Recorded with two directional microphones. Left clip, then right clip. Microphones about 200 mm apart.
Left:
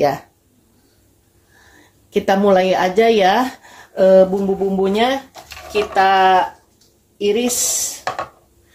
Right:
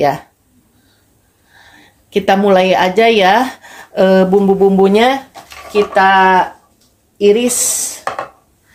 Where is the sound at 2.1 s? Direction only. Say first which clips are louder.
Right 3 dB; 10° right (ahead or behind).